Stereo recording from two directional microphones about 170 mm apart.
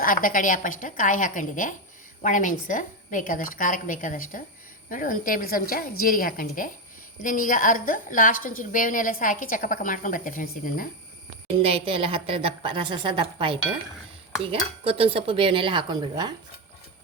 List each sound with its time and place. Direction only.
0.0 s a woman's voice: 55° left (ahead or behind)
11.4 s a woman's voice: 35° right (ahead or behind)